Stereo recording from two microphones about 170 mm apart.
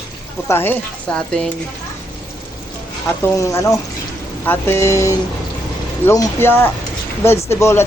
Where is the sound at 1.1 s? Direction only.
5° left (ahead or behind).